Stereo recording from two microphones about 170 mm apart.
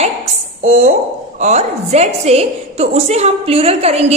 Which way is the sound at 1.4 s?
40° right (ahead or behind).